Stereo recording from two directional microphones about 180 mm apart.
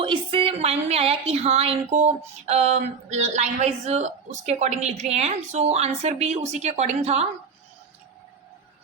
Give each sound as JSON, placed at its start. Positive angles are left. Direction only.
{"t": 0.0, "sound": "a woman's voice", "side_deg": -30}